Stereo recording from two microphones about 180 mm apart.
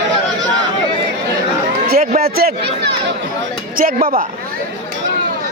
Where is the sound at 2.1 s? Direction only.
55° right (ahead or behind).